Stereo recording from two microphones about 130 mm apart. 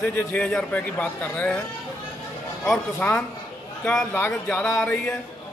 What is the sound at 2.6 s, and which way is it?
A man's voice, centre (ahead or behind).